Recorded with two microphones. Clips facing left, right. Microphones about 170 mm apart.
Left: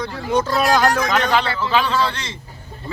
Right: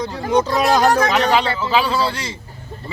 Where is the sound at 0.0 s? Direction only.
20° right (ahead or behind).